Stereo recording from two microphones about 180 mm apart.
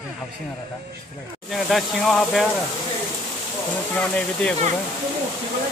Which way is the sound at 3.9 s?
5° left (ahead or behind).